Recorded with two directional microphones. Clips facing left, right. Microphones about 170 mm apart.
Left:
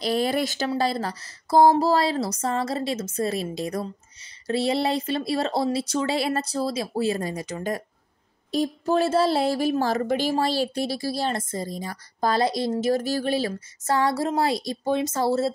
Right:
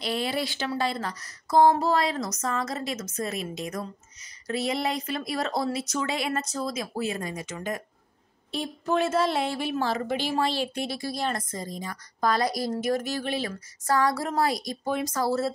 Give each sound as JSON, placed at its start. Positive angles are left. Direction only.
{"t": 0.0, "sound": "a woman's voice", "side_deg": 40}